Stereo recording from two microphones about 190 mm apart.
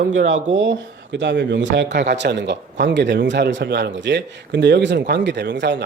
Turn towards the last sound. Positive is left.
turn(degrees=-65)  # may be behind; listen again after turning